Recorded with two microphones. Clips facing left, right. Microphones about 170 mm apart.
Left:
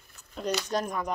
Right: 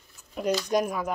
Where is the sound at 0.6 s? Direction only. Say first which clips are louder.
Right 4 dB; 10° right (ahead or behind).